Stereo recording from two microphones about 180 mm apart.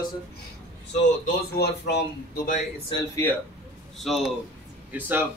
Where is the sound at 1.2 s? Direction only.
65° left (ahead or behind).